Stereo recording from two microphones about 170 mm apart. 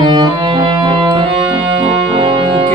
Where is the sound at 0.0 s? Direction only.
25° right (ahead or behind).